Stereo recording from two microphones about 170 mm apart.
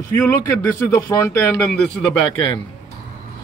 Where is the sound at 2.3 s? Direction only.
30° left (ahead or behind).